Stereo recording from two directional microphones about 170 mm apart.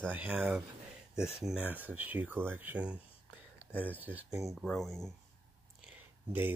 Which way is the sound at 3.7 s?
15° left (ahead or behind).